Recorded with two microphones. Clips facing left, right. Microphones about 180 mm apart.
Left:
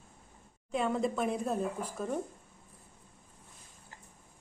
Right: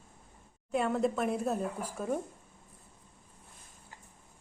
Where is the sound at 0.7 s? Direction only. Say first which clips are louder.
Right 2 dB; 5° right (ahead or behind).